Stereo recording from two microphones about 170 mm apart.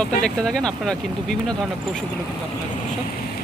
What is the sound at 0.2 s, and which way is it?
Speech, 5° left (ahead or behind).